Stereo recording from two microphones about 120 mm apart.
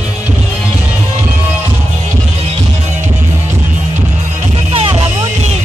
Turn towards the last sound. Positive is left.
turn(degrees=-45)  # may be behind; listen again after turning